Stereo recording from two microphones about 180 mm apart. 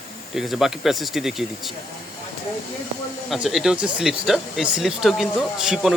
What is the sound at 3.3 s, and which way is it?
Speech, centre (ahead or behind).